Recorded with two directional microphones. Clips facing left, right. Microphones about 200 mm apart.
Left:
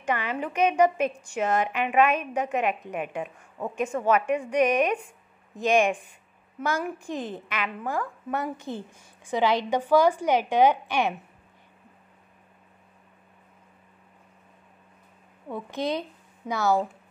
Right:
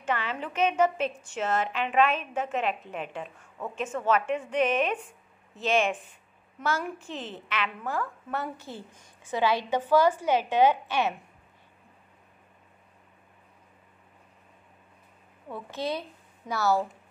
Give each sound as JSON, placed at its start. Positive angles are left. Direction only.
{"t": 0.0, "sound": "speech", "side_deg": 15}
{"t": 15.5, "sound": "speech", "side_deg": 15}